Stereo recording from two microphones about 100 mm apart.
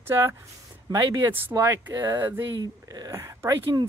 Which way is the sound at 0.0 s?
25° right (ahead or behind).